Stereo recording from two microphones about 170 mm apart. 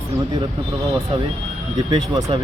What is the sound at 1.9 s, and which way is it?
Speech, 30° right (ahead or behind).